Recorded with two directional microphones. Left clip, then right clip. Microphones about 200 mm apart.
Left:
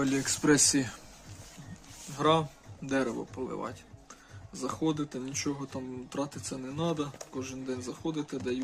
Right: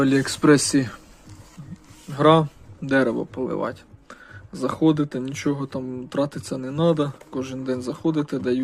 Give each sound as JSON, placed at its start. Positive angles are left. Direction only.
{"t": 0.0, "sound": "speech", "side_deg": -20}
{"t": 2.1, "sound": "a man's voice", "side_deg": -25}